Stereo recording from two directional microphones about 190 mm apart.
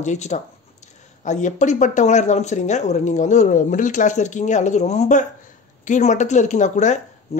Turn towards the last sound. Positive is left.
turn(degrees=40)  # may be behind; listen again after turning